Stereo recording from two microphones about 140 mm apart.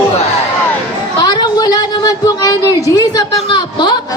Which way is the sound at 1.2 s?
30° left (ahead or behind).